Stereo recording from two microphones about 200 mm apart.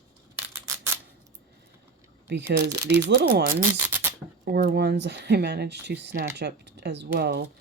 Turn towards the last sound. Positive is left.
turn(degrees=-55)  # may be behind; listen again after turning